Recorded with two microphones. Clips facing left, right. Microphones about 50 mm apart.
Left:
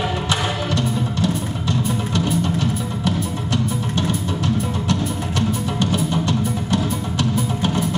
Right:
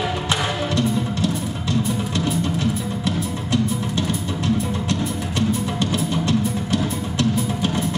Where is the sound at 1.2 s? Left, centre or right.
Left.